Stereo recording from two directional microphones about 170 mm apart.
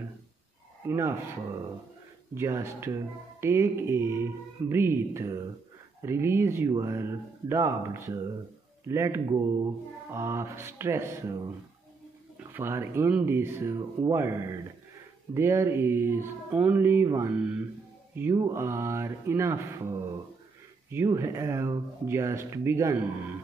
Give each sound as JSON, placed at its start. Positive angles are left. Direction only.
{"t": 0.8, "sound": "speech", "side_deg": -15}
{"t": 12.5, "sound": "speech", "side_deg": -15}